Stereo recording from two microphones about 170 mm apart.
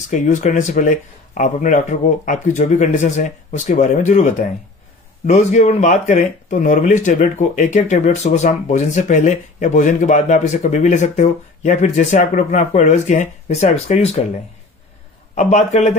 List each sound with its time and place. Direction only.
0.1 s speech: 45° left (ahead or behind)
15.3 s a man's voice: 40° left (ahead or behind)